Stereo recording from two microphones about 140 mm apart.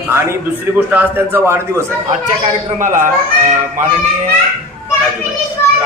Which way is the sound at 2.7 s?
65° right (ahead or behind).